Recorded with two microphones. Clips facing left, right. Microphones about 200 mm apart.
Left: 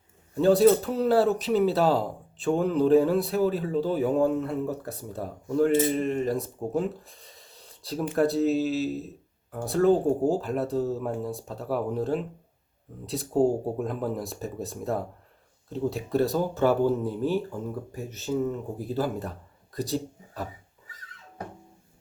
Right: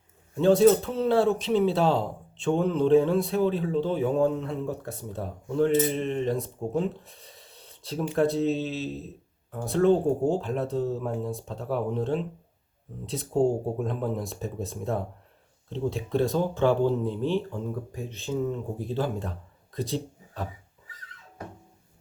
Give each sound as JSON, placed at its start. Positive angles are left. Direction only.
{"t": 0.3, "sound": "a man's voice", "side_deg": 0}